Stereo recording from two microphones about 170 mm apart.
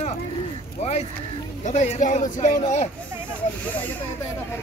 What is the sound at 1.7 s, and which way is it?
A man's voice, 45° left (ahead or behind).